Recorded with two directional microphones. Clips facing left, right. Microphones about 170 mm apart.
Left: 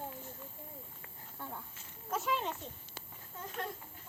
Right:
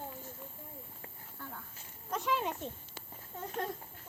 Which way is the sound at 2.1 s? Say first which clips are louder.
Right 1 dB; centre (ahead or behind).